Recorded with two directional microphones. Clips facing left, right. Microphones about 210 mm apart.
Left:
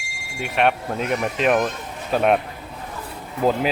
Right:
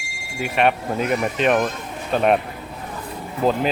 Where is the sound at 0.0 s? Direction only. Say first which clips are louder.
Right 3 dB; centre (ahead or behind).